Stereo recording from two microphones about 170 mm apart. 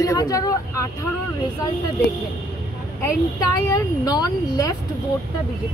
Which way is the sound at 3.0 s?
20° left (ahead or behind).